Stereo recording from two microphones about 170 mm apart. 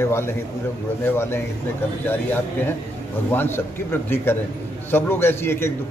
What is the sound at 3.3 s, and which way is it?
A man's voice, 15° left (ahead or behind).